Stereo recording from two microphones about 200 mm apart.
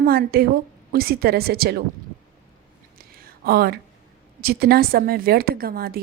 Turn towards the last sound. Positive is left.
turn(degrees=-50)  # may be behind; listen again after turning